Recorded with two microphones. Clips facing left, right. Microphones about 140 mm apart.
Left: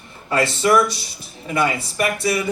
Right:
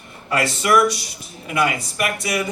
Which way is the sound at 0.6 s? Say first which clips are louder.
Right 1 dB; 30° left (ahead or behind).